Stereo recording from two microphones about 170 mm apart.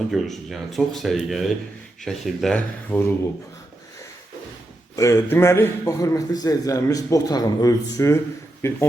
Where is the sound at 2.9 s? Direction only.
15° left (ahead or behind).